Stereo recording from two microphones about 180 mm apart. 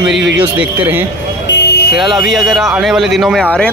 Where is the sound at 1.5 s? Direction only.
70° left (ahead or behind).